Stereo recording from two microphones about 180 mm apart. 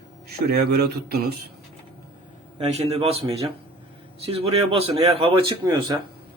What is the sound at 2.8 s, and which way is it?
A man's voice, 30° right (ahead or behind).